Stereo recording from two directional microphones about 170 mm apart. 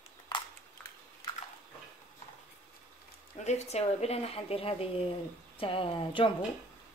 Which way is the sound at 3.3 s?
40° left (ahead or behind).